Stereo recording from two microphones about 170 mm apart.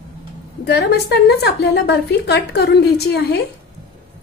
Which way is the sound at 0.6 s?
75° left (ahead or behind).